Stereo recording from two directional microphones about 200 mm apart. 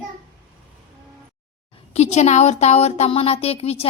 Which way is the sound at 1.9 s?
35° left (ahead or behind).